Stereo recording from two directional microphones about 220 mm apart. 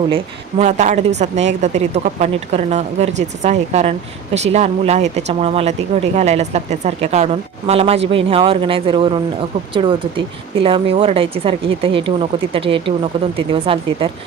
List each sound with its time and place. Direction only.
0.6 s a woman's voice: 30° right (ahead or behind)